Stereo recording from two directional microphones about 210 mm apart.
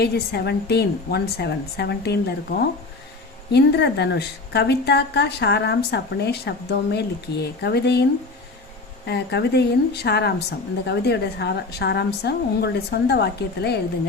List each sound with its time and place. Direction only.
0.0 s a woman's voice: 50° left (ahead or behind)
9.0 s a woman's voice: 55° left (ahead or behind)